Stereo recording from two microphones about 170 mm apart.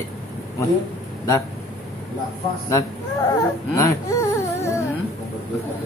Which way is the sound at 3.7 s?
20° left (ahead or behind).